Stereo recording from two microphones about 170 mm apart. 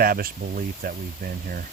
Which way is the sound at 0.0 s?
60° right (ahead or behind).